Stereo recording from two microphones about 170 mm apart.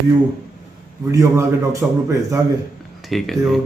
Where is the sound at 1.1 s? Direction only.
20° right (ahead or behind).